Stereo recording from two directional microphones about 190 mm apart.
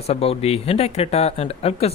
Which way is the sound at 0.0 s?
30° left (ahead or behind).